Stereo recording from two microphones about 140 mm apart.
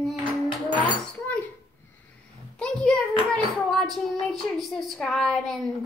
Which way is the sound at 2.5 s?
5° left (ahead or behind).